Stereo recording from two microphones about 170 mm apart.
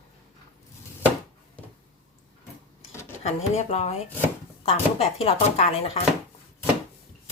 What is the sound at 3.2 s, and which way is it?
Speech, 40° left (ahead or behind).